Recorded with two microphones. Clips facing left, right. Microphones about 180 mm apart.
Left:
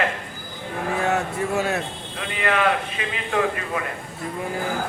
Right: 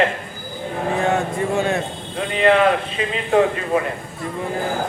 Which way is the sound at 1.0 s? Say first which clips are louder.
Right 3 dB; 5° left (ahead or behind).